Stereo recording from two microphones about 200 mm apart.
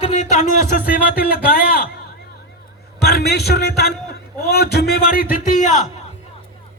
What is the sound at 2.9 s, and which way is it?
Speech, 55° left (ahead or behind).